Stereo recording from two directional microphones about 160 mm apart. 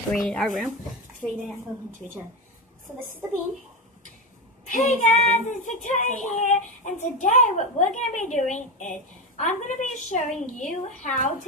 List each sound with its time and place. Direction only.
0.1 s speech: centre (ahead or behind)
1.2 s a woman's voice: 15° right (ahead or behind)
4.6 s child singing: 55° left (ahead or behind)